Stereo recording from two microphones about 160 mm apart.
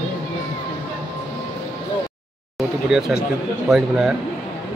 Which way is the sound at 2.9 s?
5° right (ahead or behind).